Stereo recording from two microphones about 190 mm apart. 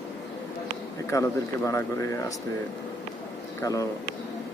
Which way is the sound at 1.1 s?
15° left (ahead or behind).